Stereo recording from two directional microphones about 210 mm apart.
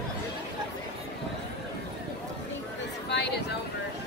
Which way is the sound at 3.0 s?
55° left (ahead or behind).